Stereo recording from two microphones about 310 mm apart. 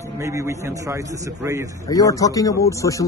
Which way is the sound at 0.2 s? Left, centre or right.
Centre.